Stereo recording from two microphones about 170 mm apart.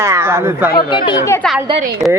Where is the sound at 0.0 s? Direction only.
15° right (ahead or behind).